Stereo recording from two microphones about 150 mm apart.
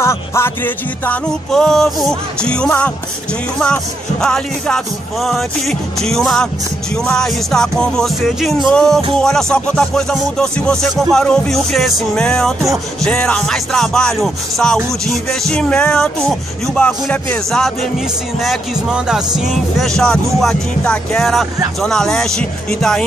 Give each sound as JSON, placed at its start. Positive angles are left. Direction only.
{"t": 0.0, "sound": "music", "side_deg": 20}
{"t": 3.5, "sound": "speech", "side_deg": 5}